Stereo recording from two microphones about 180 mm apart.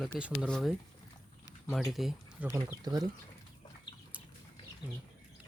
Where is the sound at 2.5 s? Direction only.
20° right (ahead or behind).